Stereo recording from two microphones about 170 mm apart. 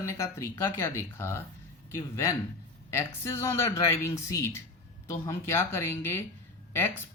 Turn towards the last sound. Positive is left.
turn(degrees=15)  # may be behind; listen again after turning